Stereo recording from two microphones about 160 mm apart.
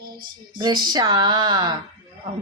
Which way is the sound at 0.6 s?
25° right (ahead or behind).